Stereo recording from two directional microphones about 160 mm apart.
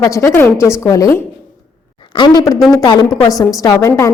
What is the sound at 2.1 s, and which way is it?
A woman's voice, 25° left (ahead or behind).